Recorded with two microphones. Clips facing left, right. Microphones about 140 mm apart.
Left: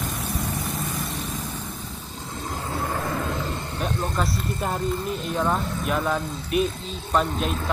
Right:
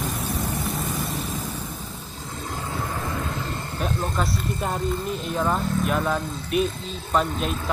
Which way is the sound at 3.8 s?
Centre (ahead or behind).